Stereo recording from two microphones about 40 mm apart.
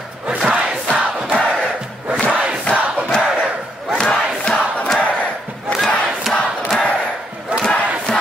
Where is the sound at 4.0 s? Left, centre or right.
Left.